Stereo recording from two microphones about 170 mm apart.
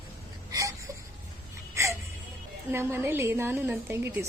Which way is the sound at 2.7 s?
15° right (ahead or behind).